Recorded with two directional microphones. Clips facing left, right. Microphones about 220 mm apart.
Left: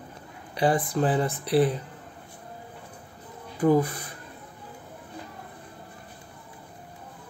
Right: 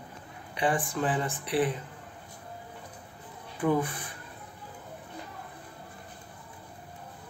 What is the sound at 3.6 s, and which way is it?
Speech, 40° left (ahead or behind).